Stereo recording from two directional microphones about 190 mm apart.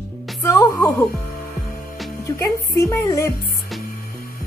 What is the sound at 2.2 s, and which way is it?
Speech, 15° left (ahead or behind).